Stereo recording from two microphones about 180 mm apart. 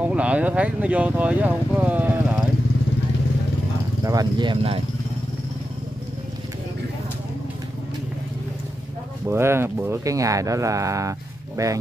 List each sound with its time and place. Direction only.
0.0 s speech: 5° right (ahead or behind)
4.0 s speech: 20° right (ahead or behind)
9.2 s speech: 15° right (ahead or behind)